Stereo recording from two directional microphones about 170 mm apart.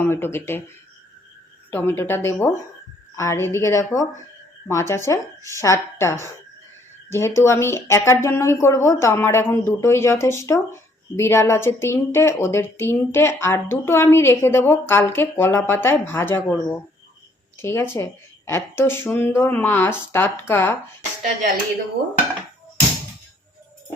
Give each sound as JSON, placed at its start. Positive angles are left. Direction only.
{"t": 0.0, "sound": "a woman's voice", "side_deg": 15}
{"t": 1.7, "sound": "a woman's voice", "side_deg": 10}
{"t": 17.6, "sound": "a woman's voice", "side_deg": 15}